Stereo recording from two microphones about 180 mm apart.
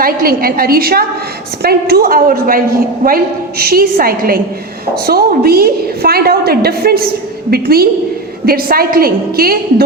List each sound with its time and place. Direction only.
0.0 s a woman's voice: 55° right (ahead or behind)